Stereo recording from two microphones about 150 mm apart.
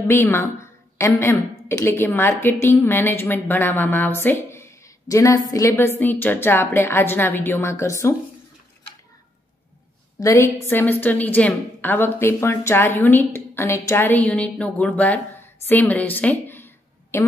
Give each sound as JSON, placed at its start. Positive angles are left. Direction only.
{"t": 0.1, "sound": "a woman's voice", "side_deg": 15}
{"t": 10.2, "sound": "a woman's voice", "side_deg": 15}
{"t": 15.6, "sound": "a sound", "side_deg": 10}